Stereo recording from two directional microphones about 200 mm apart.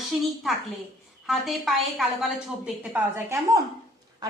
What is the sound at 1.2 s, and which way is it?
A woman's voice, centre (ahead or behind).